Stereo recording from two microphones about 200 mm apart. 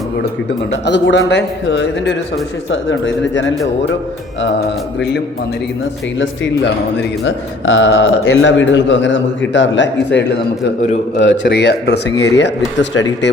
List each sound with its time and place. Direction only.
0.9 s a man's voice: 60° left (ahead or behind)
6.1 s a man's voice: 65° left (ahead or behind)